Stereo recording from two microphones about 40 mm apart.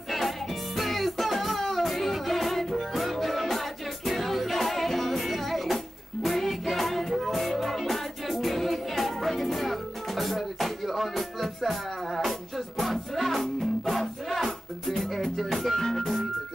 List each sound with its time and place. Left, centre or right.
0.1 s music: centre